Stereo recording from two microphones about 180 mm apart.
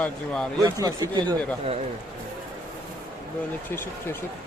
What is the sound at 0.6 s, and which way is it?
Speech, 20° right (ahead or behind).